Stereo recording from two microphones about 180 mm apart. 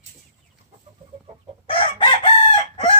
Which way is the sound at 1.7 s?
30° left (ahead or behind).